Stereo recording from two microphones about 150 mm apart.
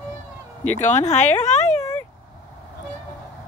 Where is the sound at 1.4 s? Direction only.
50° left (ahead or behind).